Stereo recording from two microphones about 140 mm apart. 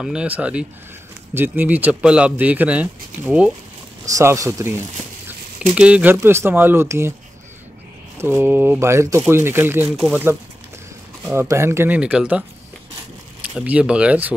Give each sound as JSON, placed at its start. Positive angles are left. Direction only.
{"t": 0.0, "sound": "speech", "side_deg": -5}
{"t": 4.0, "sound": "speech", "side_deg": -20}
{"t": 5.8, "sound": "speech", "side_deg": -10}
{"t": 8.2, "sound": "speech", "side_deg": -15}
{"t": 9.9, "sound": "speech", "side_deg": -5}
{"t": 11.3, "sound": "speech", "side_deg": -20}
{"t": 13.6, "sound": "speech", "side_deg": -10}